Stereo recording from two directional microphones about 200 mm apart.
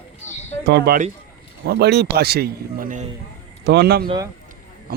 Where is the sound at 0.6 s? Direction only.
55° right (ahead or behind).